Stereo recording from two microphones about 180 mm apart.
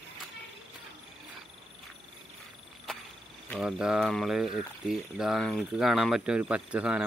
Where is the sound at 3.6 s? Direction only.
5° right (ahead or behind).